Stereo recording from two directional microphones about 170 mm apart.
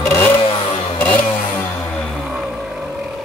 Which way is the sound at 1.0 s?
10° left (ahead or behind).